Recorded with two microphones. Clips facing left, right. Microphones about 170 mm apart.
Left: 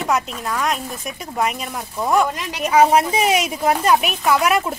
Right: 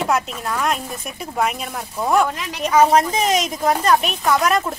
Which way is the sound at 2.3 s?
10° left (ahead or behind).